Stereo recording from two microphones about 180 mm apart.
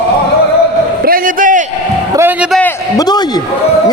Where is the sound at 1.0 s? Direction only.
50° right (ahead or behind).